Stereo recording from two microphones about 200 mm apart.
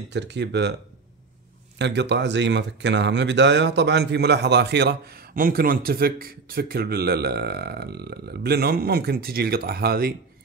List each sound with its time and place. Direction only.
0.1 s speech: 60° right (ahead or behind)
1.8 s speech: 60° right (ahead or behind)